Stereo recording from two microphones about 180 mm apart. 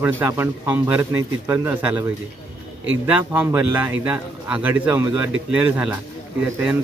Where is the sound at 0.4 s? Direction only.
10° right (ahead or behind).